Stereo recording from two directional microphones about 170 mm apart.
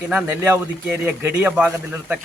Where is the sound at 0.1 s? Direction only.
10° right (ahead or behind).